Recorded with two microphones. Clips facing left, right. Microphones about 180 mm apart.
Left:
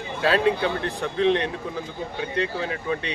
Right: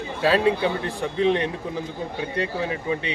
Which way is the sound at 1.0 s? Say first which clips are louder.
Even; 10° right (ahead or behind).